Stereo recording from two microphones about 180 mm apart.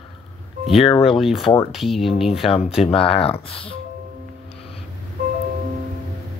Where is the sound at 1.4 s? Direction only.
20° left (ahead or behind).